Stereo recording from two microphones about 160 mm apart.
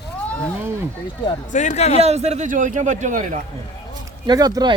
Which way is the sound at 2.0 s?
40° right (ahead or behind).